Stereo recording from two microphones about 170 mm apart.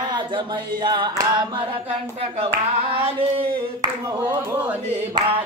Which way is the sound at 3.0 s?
30° right (ahead or behind).